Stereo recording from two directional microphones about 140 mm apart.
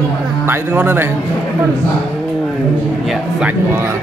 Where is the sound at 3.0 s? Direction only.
Centre (ahead or behind).